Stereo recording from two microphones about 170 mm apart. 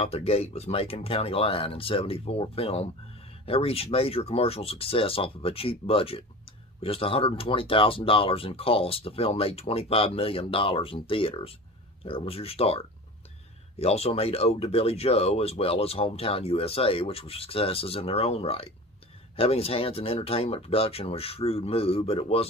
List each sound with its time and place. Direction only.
0.0 s speech: 35° left (ahead or behind)